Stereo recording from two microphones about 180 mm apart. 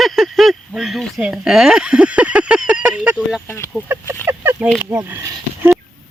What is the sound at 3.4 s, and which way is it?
Speech, 10° left (ahead or behind).